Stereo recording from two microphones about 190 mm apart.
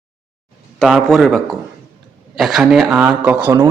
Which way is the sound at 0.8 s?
Centre (ahead or behind).